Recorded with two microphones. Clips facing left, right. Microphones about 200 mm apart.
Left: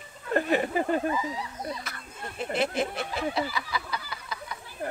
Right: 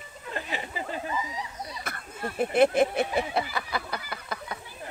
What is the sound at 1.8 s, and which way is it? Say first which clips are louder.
Speech: right 5 dB; 55° right (ahead or behind).